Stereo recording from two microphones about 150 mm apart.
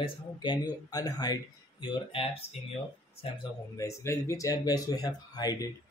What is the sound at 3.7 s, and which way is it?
Speech, 20° left (ahead or behind).